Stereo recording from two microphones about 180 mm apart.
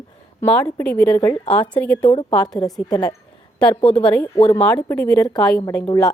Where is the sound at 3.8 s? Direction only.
5° left (ahead or behind).